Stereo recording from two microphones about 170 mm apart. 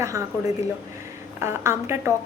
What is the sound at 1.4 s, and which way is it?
Speech, 15° right (ahead or behind).